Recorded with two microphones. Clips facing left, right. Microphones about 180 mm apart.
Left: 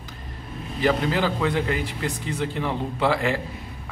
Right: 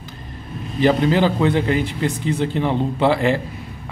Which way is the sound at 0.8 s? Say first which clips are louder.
Right 6 dB; 25° right (ahead or behind).